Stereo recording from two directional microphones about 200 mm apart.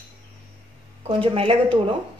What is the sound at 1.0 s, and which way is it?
Speech, 25° right (ahead or behind).